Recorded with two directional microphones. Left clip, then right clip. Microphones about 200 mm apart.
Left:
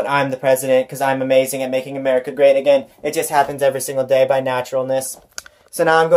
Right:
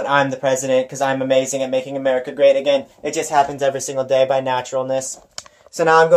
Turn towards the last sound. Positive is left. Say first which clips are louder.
# right 1 dB
turn(degrees=5)  # may be behind; listen again after turning